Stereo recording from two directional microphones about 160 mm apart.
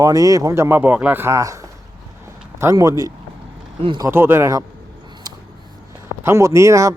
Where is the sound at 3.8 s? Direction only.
35° right (ahead or behind).